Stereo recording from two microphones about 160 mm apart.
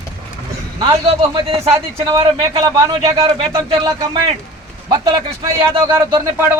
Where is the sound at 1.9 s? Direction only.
30° right (ahead or behind).